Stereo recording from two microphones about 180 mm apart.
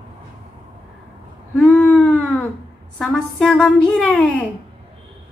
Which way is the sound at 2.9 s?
5° left (ahead or behind).